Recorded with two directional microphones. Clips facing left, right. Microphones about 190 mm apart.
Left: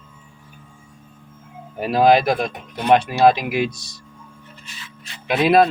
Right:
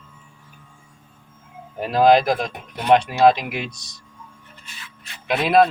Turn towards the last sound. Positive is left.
turn(degrees=5)  # may be behind; listen again after turning